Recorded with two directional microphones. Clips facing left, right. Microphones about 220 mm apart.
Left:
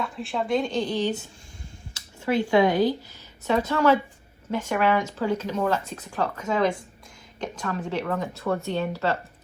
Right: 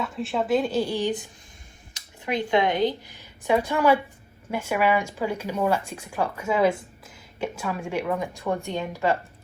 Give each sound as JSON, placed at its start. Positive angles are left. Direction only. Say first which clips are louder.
{"t": 0.0, "sound": "speech", "louder": "right 2 dB", "side_deg": 0}